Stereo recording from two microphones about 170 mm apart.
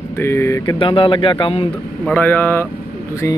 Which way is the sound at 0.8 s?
30° left (ahead or behind).